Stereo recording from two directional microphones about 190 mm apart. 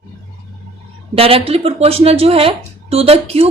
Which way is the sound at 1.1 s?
30° right (ahead or behind).